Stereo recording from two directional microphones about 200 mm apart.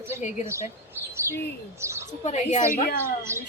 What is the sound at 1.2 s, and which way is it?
Speech, 15° right (ahead or behind).